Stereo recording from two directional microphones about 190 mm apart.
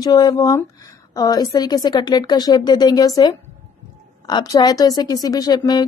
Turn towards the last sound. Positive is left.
turn(degrees=20)  # may be behind; listen again after turning